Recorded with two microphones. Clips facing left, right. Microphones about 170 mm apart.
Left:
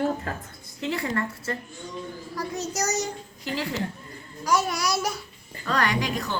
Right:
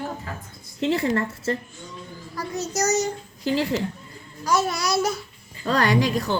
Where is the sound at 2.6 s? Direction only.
10° left (ahead or behind).